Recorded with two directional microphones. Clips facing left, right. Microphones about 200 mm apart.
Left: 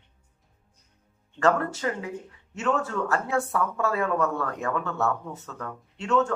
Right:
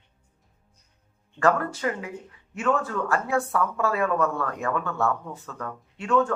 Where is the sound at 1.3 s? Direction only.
25° left (ahead or behind).